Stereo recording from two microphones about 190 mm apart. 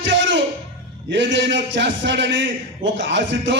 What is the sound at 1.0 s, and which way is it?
A man's voice, 70° right (ahead or behind).